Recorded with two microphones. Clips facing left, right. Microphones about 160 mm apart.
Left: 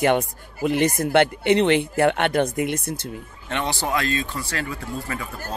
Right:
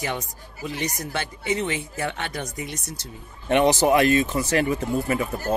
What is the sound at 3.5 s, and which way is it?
Speech, 20° right (ahead or behind).